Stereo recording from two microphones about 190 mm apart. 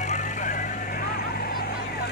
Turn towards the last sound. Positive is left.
turn(degrees=45)  # may be behind; listen again after turning